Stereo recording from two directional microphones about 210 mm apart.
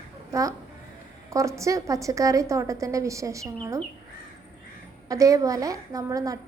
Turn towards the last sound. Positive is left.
turn(degrees=-15)  # may be behind; listen again after turning